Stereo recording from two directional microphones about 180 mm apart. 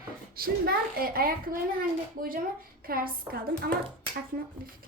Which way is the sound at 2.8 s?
55° right (ahead or behind).